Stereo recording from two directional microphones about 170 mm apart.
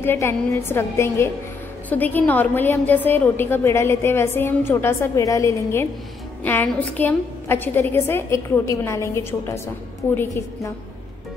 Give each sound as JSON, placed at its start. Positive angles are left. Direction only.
{"t": 0.0, "sound": "a woman's voice", "side_deg": 15}